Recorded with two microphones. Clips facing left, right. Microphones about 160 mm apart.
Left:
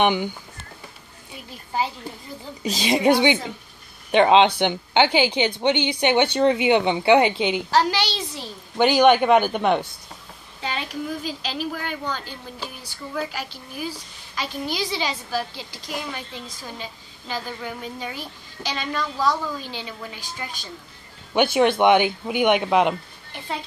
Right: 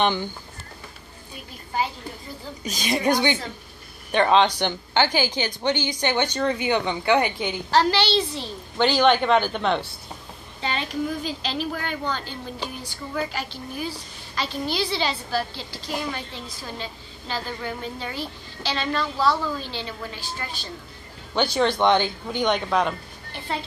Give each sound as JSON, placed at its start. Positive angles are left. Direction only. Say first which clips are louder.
{"t": 0.0, "sound": "a woman's voice", "louder": "left 3 dB", "side_deg": 15}
{"t": 2.6, "sound": "a woman's voice", "louder": "left 4 dB", "side_deg": 25}